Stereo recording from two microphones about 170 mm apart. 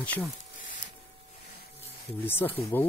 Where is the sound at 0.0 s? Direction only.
10° left (ahead or behind).